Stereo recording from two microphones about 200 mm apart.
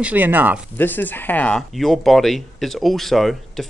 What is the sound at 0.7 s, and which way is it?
Speech, 10° left (ahead or behind).